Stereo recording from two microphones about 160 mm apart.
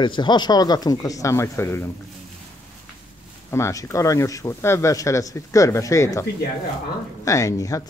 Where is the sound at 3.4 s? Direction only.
15° left (ahead or behind).